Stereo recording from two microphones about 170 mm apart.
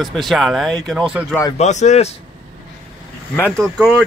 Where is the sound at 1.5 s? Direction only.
45° left (ahead or behind).